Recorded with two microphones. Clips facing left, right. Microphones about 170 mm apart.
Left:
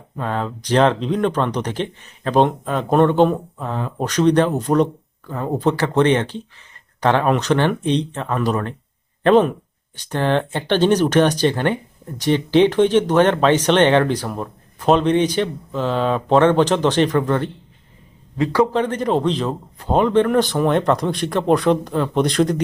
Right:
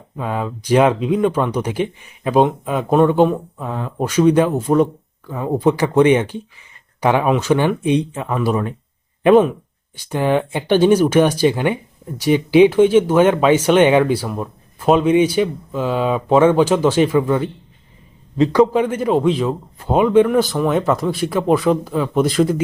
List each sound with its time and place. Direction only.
0.2 s speech: 10° right (ahead or behind)
18.3 s a man's voice: 20° right (ahead or behind)
18.7 s a man's voice: 10° right (ahead or behind)